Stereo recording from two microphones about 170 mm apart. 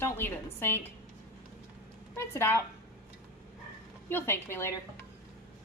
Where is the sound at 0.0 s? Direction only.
15° left (ahead or behind).